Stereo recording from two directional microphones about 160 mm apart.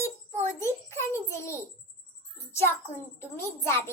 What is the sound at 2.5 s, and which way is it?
Music, 15° left (ahead or behind).